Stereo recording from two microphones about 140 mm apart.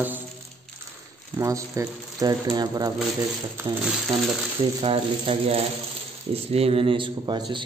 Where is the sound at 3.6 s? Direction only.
20° right (ahead or behind).